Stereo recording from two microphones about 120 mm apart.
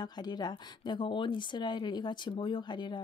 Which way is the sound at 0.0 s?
35° left (ahead or behind).